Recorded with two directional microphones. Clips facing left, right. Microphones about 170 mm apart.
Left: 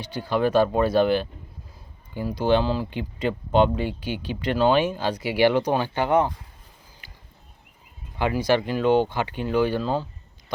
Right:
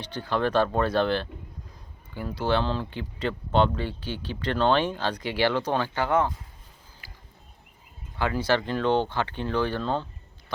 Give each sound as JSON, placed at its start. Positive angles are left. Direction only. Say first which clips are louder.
{"t": 0.0, "sound": "speech", "louder": "left 3 dB", "side_deg": 10}
{"t": 7.0, "sound": "a sound", "louder": "right 2 dB", "side_deg": 20}
{"t": 8.2, "sound": "speech", "louder": "left 3 dB", "side_deg": 10}